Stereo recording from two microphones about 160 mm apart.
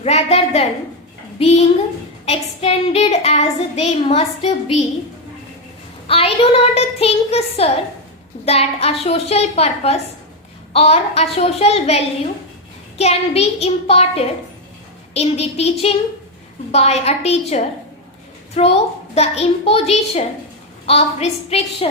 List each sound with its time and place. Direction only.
0.0 s child singing: 40° left (ahead or behind)
1.4 s a woman's voice: 40° left (ahead or behind)
2.2 s child singing: 40° left (ahead or behind)
6.1 s child singing: 35° left (ahead or behind)